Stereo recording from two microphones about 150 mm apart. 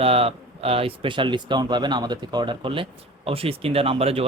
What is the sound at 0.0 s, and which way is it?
A man's voice, 40° right (ahead or behind).